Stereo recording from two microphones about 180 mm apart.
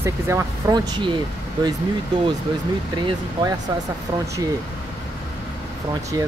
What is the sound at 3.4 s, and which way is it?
Speech, 30° right (ahead or behind).